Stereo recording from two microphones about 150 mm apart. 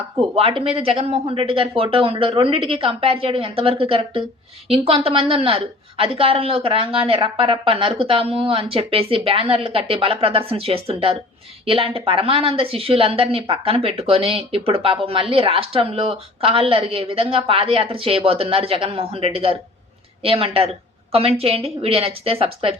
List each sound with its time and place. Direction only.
0.2 s a woman's voice: 40° right (ahead or behind)